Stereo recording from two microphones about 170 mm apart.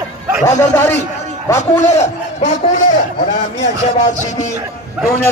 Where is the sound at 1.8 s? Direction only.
45° left (ahead or behind).